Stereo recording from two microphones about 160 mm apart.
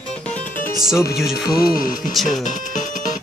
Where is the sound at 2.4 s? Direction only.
50° left (ahead or behind).